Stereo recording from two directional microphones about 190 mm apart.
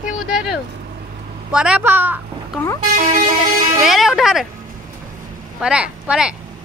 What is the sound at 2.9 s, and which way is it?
Vehicle, 40° right (ahead or behind).